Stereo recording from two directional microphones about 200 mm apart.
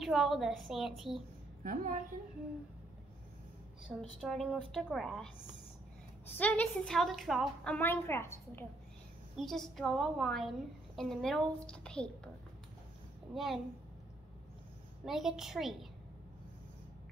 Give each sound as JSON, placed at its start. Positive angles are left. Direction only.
{"t": 0.0, "sound": "a woman's voice", "side_deg": 0}
{"t": 1.6, "sound": "a woman's voice", "side_deg": -40}
{"t": 4.2, "sound": "a woman's voice", "side_deg": 0}
{"t": 9.4, "sound": "a woman's voice", "side_deg": 0}
{"t": 13.3, "sound": "a woman's voice", "side_deg": 0}
{"t": 15.0, "sound": "a woman's voice", "side_deg": 0}